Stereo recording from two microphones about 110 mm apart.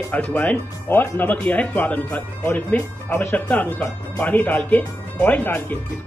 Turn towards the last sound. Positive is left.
turn(degrees=15)  # may be behind; listen again after turning